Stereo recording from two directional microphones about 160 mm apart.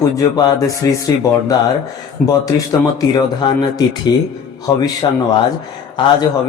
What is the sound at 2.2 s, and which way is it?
Speech, 60° left (ahead or behind).